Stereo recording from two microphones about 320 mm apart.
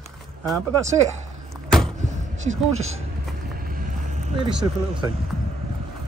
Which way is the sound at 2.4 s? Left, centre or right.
Right.